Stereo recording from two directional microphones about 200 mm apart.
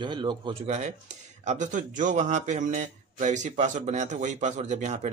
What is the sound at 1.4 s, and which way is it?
Speech, 40° right (ahead or behind).